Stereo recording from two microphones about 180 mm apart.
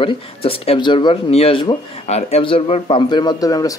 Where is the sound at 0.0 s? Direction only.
30° left (ahead or behind).